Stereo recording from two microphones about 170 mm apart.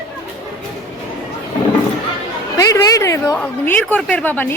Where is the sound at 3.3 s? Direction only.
5° left (ahead or behind).